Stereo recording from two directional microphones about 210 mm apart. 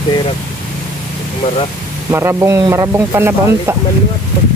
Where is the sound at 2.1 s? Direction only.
10° right (ahead or behind).